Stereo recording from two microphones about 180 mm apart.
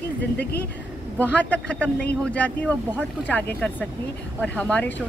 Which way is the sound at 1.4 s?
5° left (ahead or behind).